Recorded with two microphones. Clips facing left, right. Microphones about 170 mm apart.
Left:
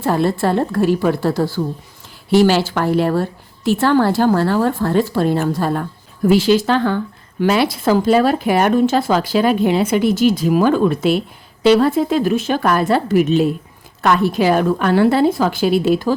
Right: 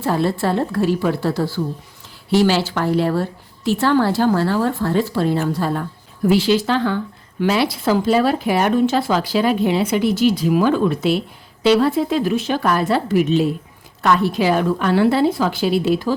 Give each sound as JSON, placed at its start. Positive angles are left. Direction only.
{"t": 0.0, "sound": "speech", "side_deg": 50}